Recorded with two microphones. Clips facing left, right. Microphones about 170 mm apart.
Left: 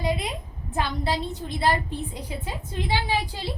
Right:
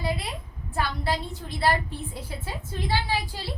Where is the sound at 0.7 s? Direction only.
20° left (ahead or behind).